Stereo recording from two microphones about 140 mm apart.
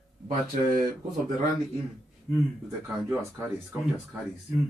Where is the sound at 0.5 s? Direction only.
65° right (ahead or behind).